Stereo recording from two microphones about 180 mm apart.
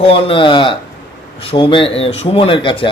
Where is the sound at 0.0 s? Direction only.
30° left (ahead or behind).